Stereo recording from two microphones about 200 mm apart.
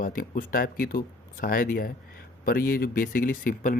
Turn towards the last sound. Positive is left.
turn(degrees=45)  # may be behind; listen again after turning